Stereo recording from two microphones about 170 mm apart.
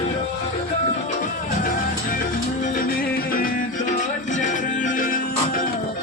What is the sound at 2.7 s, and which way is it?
Music, 55° left (ahead or behind).